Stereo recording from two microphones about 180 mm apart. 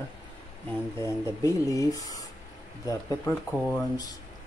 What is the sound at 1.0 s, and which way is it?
Speech, 15° left (ahead or behind).